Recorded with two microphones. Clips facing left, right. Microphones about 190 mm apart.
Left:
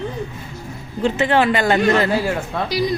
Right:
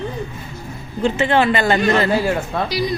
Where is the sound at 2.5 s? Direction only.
40° right (ahead or behind).